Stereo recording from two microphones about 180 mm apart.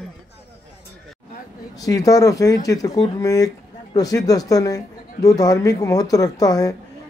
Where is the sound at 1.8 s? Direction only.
20° left (ahead or behind).